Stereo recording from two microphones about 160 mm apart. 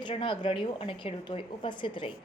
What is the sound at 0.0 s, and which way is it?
A woman's voice, 30° left (ahead or behind).